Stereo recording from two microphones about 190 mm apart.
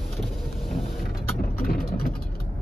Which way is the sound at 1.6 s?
55° left (ahead or behind).